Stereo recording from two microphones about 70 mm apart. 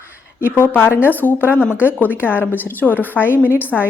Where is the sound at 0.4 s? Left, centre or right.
Left.